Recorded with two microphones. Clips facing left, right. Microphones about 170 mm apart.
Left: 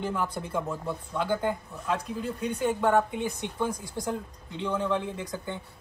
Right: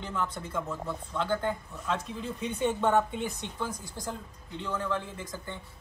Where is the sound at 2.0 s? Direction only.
Centre (ahead or behind); by 5.0 s 15° left (ahead or behind).